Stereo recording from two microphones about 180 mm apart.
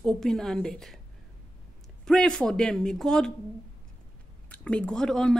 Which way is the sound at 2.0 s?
5° left (ahead or behind).